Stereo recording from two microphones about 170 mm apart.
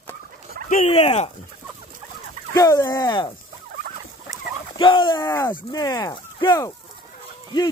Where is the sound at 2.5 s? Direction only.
20° left (ahead or behind).